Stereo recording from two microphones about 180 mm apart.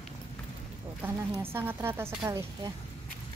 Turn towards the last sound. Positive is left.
turn(degrees=-20)  # may be behind; listen again after turning